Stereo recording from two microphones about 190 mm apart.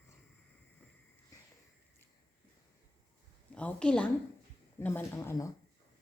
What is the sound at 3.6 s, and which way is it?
Speech, 5° left (ahead or behind).